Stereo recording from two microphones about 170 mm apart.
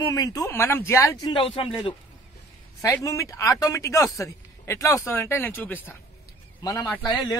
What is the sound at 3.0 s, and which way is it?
Speech, 20° left (ahead or behind).